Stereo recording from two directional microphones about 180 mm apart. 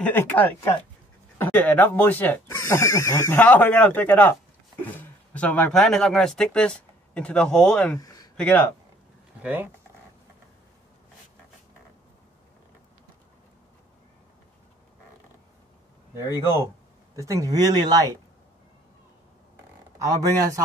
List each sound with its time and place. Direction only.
0.0 s speech: 10° left (ahead or behind)
8.0 s a sound: 20° left (ahead or behind)
8.4 s speech: 10° left (ahead or behind)
9.4 s speech: 10° right (ahead or behind)
16.2 s speech: 20° left (ahead or behind)
17.1 s speech: 15° right (ahead or behind)
20.0 s speech: 15° right (ahead or behind)